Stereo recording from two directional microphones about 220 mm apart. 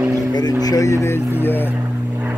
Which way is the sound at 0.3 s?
15° left (ahead or behind).